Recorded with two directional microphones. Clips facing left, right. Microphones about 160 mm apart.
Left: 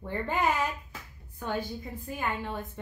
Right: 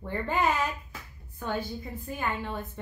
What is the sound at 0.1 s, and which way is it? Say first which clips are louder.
A woman's voice: right 1 dB; 10° left (ahead or behind).